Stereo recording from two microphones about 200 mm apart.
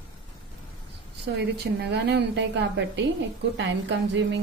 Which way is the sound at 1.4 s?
55° right (ahead or behind).